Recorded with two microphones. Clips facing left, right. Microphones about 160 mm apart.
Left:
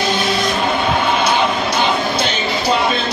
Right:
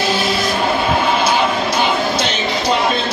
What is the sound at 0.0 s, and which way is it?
Music, 5° right (ahead or behind).